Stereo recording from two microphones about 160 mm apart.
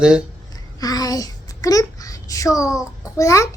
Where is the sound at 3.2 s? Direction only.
20° left (ahead or behind).